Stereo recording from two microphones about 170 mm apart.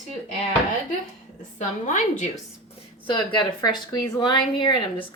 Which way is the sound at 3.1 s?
30° left (ahead or behind).